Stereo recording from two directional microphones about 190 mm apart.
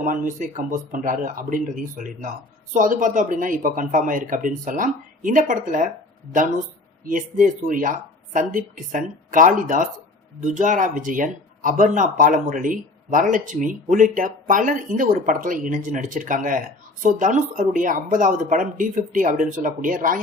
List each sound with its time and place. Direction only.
0.3 s speech: 45° right (ahead or behind)